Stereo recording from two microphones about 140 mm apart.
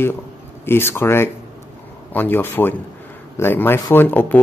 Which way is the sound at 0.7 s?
15° left (ahead or behind).